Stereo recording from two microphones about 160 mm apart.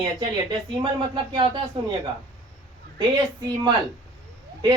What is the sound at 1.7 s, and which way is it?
Speech, 35° right (ahead or behind).